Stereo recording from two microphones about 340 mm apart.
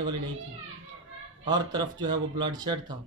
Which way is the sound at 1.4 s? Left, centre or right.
Centre.